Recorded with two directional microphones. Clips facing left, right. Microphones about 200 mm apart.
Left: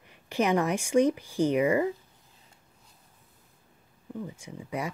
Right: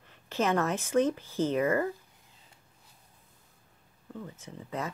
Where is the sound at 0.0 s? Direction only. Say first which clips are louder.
Left 2 dB; 15° left (ahead or behind).